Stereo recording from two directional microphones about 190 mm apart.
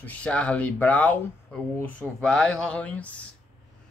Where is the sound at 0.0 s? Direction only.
5° left (ahead or behind).